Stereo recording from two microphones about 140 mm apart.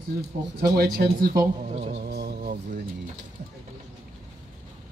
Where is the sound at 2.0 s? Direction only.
90° right.